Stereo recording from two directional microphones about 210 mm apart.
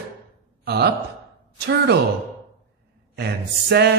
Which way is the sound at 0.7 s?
55° right (ahead or behind).